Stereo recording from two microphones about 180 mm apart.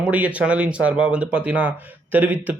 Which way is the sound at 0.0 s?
5° right (ahead or behind).